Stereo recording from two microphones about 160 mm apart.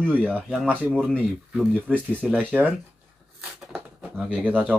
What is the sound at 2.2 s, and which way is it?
Speech, 10° right (ahead or behind).